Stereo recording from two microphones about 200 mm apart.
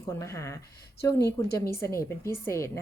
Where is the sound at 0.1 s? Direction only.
15° left (ahead or behind).